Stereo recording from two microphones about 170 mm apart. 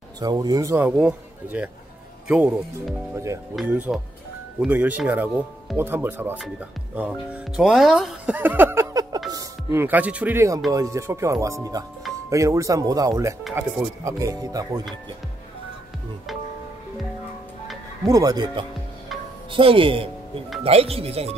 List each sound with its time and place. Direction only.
0.2 s speech: 25° right (ahead or behind); by 2.5 s 5° right (ahead or behind)
3.6 s speech: 10° right (ahead or behind)
18.0 s speech: 20° right (ahead or behind); by 21.4 s 35° right (ahead or behind)